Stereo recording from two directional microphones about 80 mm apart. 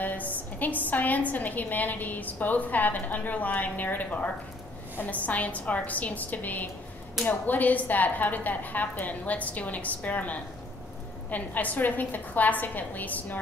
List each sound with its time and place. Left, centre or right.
0.0 s a woman's voice: left